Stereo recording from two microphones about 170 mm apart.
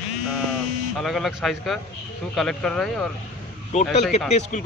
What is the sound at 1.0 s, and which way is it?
A man's voice, centre (ahead or behind).